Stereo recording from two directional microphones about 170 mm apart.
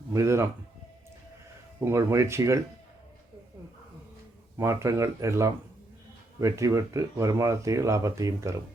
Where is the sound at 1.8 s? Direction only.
15° right (ahead or behind).